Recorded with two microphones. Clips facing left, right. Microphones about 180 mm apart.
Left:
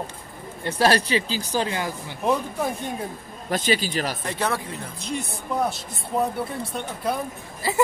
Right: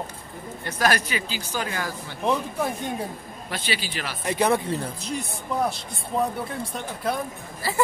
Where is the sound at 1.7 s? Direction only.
20° left (ahead or behind).